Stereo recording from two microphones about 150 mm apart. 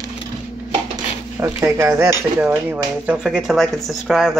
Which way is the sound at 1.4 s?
20° right (ahead or behind).